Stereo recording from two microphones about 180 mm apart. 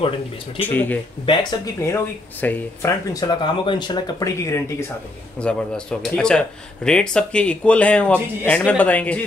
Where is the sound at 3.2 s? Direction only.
25° left (ahead or behind).